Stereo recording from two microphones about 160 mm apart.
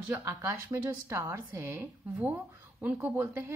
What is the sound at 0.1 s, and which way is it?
A woman's voice, 20° right (ahead or behind).